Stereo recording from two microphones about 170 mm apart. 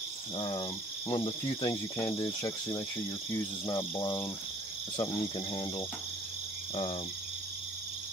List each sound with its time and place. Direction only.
0.4 s speech: 30° left (ahead or behind)
4.9 s cricket: 15° left (ahead or behind)
6.7 s speech: 35° left (ahead or behind)